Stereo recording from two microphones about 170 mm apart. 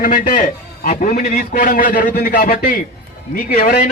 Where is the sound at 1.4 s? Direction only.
55° left (ahead or behind).